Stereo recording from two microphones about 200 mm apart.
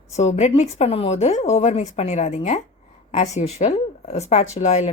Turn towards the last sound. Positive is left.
turn(degrees=35)  # may be behind; listen again after turning